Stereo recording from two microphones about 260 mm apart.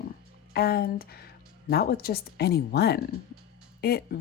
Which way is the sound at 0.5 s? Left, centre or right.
Left.